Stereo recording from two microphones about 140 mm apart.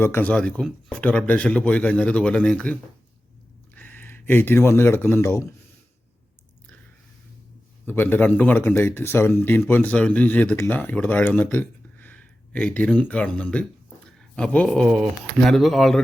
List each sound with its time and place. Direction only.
0.0 s speech: 15° left (ahead or behind)
3.8 s speech: 15° left (ahead or behind)
7.9 s speech: 15° left (ahead or behind)